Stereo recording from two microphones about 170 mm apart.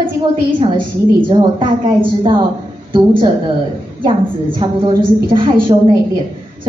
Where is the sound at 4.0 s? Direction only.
30° right (ahead or behind).